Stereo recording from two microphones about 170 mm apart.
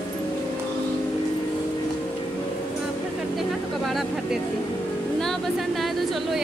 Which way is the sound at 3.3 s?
Centre (ahead or behind).